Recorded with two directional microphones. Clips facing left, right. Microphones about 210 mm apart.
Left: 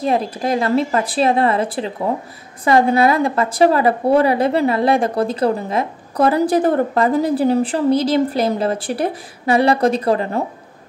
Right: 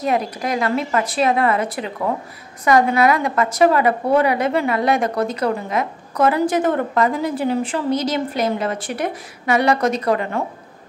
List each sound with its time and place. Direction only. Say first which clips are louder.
0.0 s a woman's voice: left 2 dB; 30° left (ahead or behind)